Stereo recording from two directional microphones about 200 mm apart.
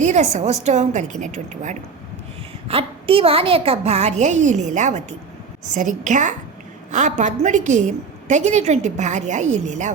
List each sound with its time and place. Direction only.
0.0 s a woman's voice: 35° right (ahead or behind)